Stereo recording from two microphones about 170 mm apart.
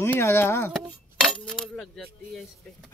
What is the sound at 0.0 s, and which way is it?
Speech, 15° left (ahead or behind).